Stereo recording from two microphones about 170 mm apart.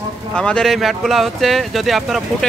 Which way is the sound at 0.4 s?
5° left (ahead or behind).